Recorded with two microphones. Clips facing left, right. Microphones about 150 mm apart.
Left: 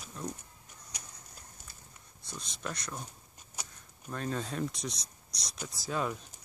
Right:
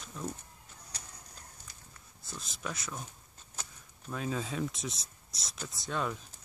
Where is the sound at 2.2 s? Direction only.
Centre (ahead or behind).